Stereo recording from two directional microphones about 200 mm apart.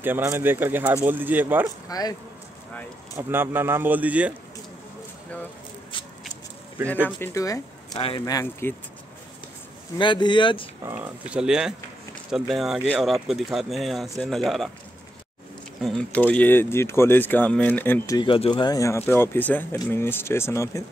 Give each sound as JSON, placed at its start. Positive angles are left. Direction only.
{"t": 0.0, "sound": "a man's voice", "side_deg": -10}
{"t": 1.9, "sound": "speech", "side_deg": 20}
{"t": 3.2, "sound": "a man's voice", "side_deg": -10}
{"t": 7.2, "sound": "speech", "side_deg": 15}
{"t": 8.0, "sound": "speech", "side_deg": 25}
{"t": 8.4, "sound": "speech", "side_deg": 15}
{"t": 9.9, "sound": "speech", "side_deg": 25}
{"t": 10.8, "sound": "speech", "side_deg": -10}
{"t": 15.8, "sound": "speech", "side_deg": 5}